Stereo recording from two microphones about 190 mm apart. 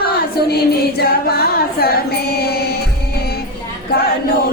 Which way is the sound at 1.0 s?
55° left (ahead or behind).